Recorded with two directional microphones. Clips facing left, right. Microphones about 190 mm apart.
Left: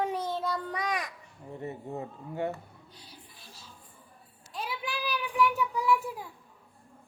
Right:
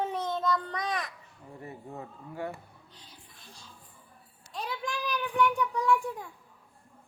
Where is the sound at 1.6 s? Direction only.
25° left (ahead or behind).